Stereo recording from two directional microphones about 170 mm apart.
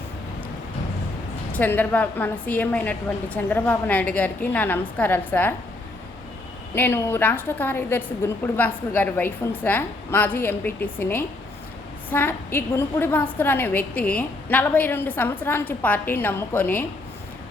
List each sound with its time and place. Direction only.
1.5 s a woman's voice: 10° left (ahead or behind)
6.7 s a woman's voice: 15° left (ahead or behind)